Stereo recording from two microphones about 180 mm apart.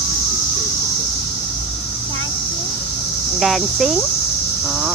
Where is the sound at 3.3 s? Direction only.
Centre (ahead or behind).